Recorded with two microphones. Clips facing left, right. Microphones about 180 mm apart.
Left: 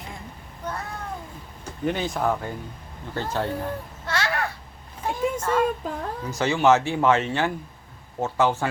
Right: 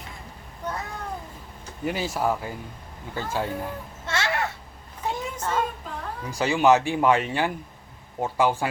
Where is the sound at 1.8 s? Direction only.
5° right (ahead or behind).